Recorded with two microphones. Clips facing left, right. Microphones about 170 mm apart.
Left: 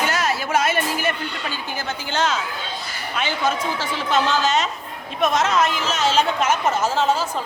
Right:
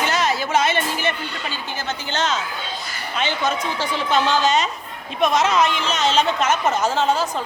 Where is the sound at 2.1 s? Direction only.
10° left (ahead or behind).